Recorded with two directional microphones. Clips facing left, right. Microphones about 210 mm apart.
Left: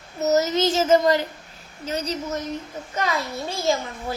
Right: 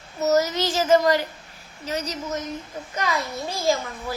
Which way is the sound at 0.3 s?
20° left (ahead or behind).